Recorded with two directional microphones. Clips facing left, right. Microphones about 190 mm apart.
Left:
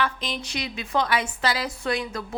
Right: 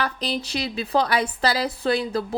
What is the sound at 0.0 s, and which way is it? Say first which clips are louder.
Speech: right 2 dB; 35° right (ahead or behind).